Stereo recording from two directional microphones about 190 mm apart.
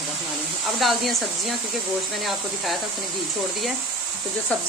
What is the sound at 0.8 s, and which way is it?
Speech, centre (ahead or behind).